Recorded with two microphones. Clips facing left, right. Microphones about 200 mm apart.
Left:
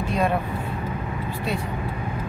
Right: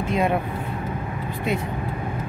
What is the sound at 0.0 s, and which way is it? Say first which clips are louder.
Vehicle: right 1 dB; 20° right (ahead or behind).